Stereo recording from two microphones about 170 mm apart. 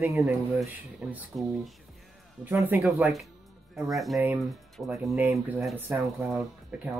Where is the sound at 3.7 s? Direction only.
Centre (ahead or behind).